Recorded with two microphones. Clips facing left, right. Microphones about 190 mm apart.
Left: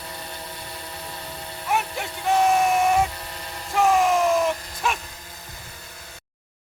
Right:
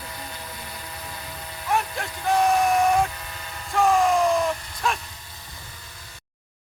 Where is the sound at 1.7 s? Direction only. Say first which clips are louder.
Even; centre (ahead or behind).